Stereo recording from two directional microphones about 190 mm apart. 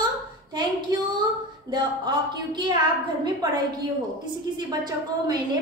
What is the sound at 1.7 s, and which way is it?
A woman's voice, 25° right (ahead or behind).